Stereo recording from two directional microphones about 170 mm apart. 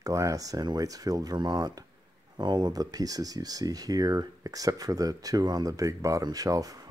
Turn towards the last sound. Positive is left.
turn(degrees=-20)  # may be behind; listen again after turning